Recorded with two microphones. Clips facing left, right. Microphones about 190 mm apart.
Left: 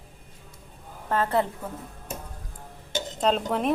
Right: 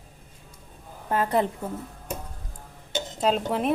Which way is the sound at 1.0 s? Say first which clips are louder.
Right 1 dB; 15° right (ahead or behind).